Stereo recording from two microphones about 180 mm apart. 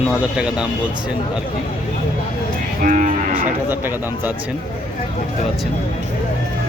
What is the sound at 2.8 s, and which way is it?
Cattle, 45° right (ahead or behind).